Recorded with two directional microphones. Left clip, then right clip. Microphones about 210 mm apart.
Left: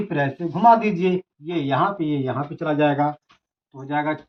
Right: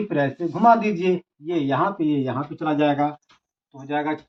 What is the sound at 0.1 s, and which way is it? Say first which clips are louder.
A man's voice: right 1 dB; 10° right (ahead or behind).